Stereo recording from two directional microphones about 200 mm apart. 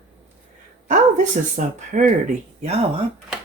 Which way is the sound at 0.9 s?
40° right (ahead or behind).